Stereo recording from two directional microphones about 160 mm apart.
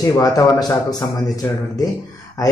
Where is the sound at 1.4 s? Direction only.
15° left (ahead or behind).